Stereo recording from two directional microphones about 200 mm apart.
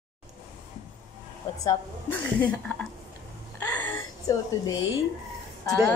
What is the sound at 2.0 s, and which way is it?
Speech, 5° left (ahead or behind).